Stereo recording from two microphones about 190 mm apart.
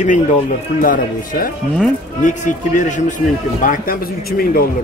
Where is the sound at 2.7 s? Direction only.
40° left (ahead or behind).